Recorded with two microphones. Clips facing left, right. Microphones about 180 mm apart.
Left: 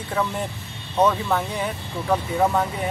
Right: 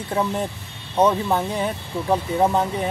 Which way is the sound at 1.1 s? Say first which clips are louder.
Right 2 dB; 25° right (ahead or behind).